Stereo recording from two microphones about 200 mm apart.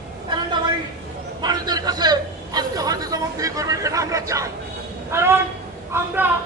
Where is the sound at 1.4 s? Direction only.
20° right (ahead or behind).